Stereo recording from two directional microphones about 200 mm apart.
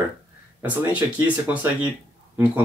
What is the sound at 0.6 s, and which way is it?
Speech, 10° right (ahead or behind).